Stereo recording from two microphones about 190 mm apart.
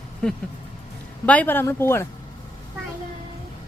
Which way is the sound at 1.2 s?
5° left (ahead or behind).